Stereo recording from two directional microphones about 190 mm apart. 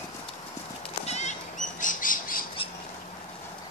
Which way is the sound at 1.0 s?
35° left (ahead or behind).